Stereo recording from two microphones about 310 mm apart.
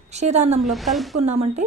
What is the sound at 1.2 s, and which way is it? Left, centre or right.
Speech, right.